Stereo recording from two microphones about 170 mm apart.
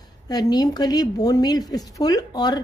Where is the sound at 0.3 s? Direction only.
20° left (ahead or behind).